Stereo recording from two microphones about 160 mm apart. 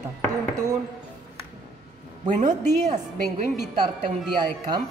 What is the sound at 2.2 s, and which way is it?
Speech, 50° right (ahead or behind).